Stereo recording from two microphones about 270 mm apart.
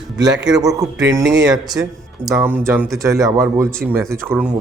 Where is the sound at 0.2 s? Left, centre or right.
Centre.